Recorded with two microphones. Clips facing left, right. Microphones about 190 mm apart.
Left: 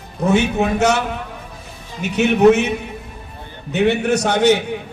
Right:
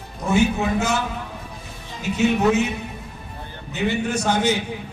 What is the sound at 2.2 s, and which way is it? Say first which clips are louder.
Speech: left 6 dB; 75° left (ahead or behind).